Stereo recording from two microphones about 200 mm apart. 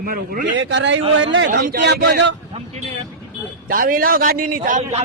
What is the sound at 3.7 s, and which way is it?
A man's voice, 45° right (ahead or behind).